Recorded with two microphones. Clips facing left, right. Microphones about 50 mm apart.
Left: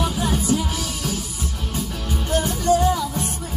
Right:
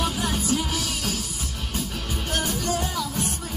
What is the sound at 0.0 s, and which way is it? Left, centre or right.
Music, left.